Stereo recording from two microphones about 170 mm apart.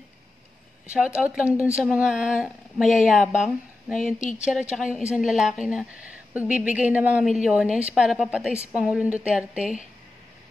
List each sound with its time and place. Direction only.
0.8 s a woman's voice: 5° right (ahead or behind)
4.0 s speech: 45° left (ahead or behind)
4.5 s a woman's voice: 5° right (ahead or behind)